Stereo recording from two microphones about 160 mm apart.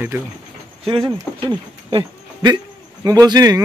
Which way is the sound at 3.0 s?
20° right (ahead or behind).